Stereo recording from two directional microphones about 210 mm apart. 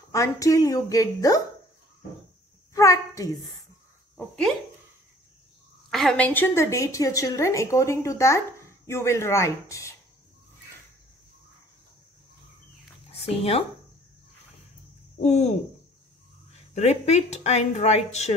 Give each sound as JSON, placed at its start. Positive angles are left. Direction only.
{"t": 0.1, "sound": "a woman's voice", "side_deg": 15}
{"t": 2.7, "sound": "a child's voice", "side_deg": 15}
{"t": 5.9, "sound": "a woman's voice", "side_deg": 0}
{"t": 13.1, "sound": "speech", "side_deg": 30}
{"t": 15.1, "sound": "speech", "side_deg": 30}
{"t": 16.7, "sound": "speech", "side_deg": 30}